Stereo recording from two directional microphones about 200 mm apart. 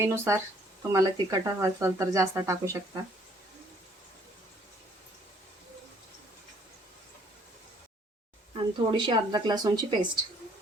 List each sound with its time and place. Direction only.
0.0 s speech: 15° right (ahead or behind)
8.5 s speech: 20° right (ahead or behind)